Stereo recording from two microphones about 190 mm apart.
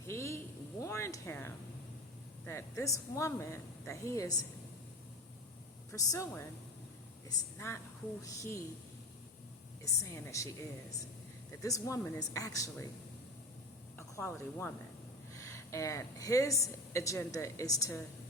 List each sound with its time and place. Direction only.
0.1 s a sound: 15° left (ahead or behind)
2.5 s a woman's voice: 15° left (ahead or behind)
5.9 s a woman's voice: 15° left (ahead or behind)
9.8 s a woman's voice: 15° left (ahead or behind)
14.2 s a woman's voice: 15° left (ahead or behind)